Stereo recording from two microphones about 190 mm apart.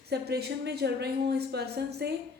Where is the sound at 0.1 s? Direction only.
60° right (ahead or behind).